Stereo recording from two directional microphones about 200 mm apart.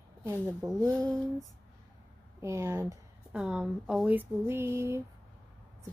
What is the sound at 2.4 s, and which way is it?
Speech, 15° right (ahead or behind).